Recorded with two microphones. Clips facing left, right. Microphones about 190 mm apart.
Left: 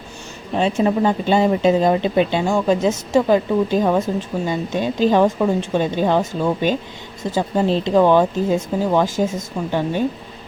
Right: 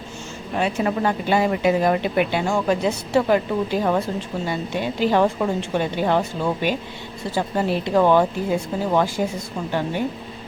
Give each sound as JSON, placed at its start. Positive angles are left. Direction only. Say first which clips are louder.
{"t": 0.5, "sound": "speech", "louder": "left 4 dB", "side_deg": 25}